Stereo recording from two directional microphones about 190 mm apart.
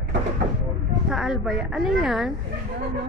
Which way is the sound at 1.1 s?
5° right (ahead or behind).